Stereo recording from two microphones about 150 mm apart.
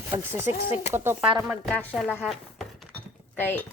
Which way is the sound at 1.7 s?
10° left (ahead or behind).